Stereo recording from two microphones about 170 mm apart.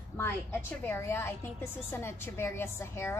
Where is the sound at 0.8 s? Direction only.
15° left (ahead or behind).